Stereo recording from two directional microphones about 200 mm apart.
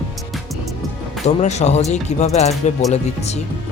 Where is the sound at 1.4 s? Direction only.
35° left (ahead or behind).